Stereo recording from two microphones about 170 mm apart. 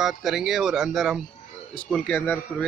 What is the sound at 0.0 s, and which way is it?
Speech, centre (ahead or behind).